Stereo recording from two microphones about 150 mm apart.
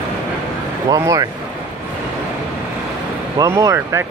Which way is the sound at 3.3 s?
20° right (ahead or behind).